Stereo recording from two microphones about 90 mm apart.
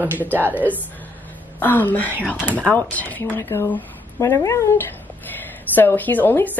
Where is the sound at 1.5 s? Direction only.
20° left (ahead or behind).